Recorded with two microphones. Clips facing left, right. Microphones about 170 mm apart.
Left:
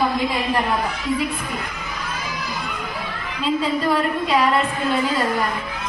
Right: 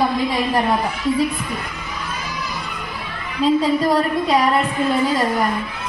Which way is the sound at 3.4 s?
40° right (ahead or behind).